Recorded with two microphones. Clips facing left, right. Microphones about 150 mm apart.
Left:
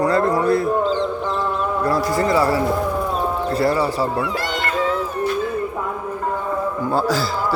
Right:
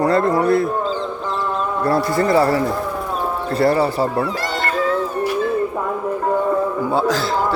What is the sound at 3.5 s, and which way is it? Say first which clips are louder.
Speech: right 4 dB; 55° right (ahead or behind).